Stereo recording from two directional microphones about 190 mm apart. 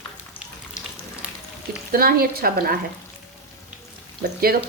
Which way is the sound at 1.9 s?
50° right (ahead or behind).